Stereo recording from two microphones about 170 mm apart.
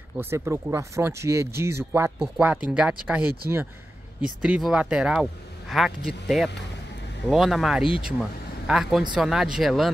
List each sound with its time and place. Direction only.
0.2 s speech: 15° right (ahead or behind)